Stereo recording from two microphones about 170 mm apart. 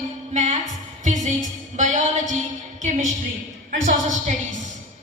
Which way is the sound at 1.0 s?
45° right (ahead or behind).